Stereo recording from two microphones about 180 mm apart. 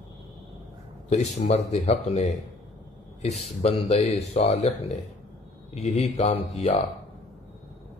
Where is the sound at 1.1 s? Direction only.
40° left (ahead or behind).